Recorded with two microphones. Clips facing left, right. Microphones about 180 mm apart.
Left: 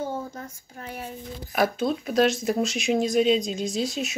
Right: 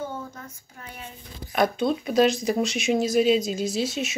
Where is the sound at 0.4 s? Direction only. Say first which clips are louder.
Left 4 dB; 40° left (ahead or behind).